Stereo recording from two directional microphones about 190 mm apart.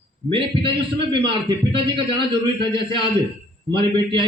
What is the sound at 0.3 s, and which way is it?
Speech, 30° right (ahead or behind).